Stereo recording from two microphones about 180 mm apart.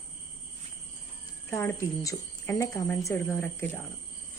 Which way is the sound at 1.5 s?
15° left (ahead or behind).